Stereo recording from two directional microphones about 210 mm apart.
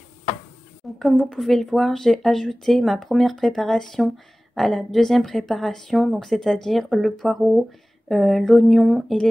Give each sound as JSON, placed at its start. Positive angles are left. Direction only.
{"t": 0.9, "sound": "speech", "side_deg": 0}